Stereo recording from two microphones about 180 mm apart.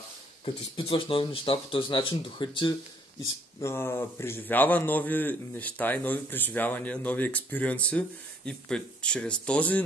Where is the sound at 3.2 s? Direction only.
15° left (ahead or behind).